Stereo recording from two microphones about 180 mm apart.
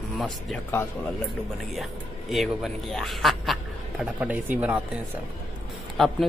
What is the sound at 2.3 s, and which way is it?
Speech, centre (ahead or behind).